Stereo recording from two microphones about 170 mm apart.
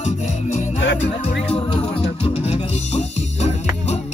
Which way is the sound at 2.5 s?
40° left (ahead or behind).